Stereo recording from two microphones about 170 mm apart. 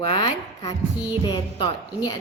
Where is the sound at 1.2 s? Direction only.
25° left (ahead or behind).